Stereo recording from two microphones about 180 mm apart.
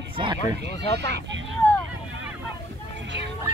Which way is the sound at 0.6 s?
70° right (ahead or behind).